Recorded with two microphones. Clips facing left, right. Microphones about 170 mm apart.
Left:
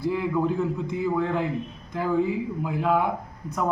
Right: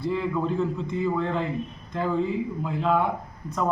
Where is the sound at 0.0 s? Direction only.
10° left (ahead or behind).